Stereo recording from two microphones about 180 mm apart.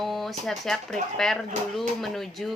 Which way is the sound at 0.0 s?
Centre (ahead or behind).